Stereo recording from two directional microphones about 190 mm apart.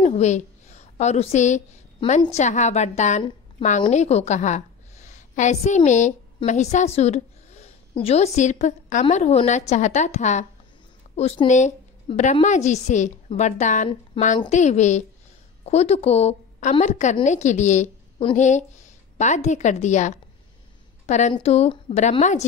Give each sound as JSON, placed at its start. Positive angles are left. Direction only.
{"t": 0.0, "sound": "a woman's voice", "side_deg": 35}
{"t": 14.2, "sound": "a woman's voice", "side_deg": 25}
{"t": 14.5, "sound": "a woman's voice", "side_deg": 40}